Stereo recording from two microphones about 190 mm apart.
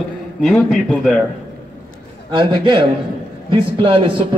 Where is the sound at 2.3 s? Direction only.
25° right (ahead or behind).